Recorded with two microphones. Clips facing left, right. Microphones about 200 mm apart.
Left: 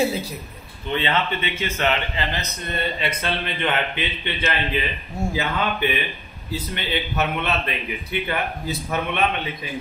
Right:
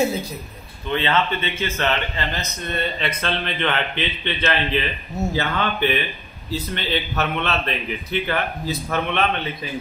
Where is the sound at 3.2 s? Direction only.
10° left (ahead or behind).